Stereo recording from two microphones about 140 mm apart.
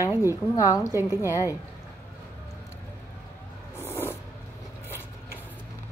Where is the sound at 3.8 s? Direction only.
15° left (ahead or behind).